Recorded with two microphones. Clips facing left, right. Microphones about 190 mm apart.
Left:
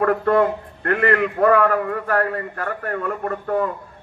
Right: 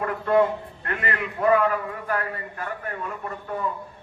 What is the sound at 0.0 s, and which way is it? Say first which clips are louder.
A man's voice: left 4 dB; 60° left (ahead or behind).